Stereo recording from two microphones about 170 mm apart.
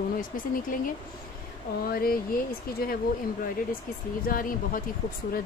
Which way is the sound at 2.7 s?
60° left (ahead or behind).